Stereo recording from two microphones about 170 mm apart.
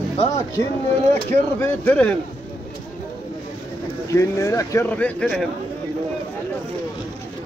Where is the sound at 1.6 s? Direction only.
10° left (ahead or behind).